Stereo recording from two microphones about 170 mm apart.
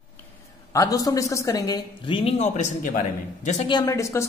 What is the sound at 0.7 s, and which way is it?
Speech, 20° left (ahead or behind).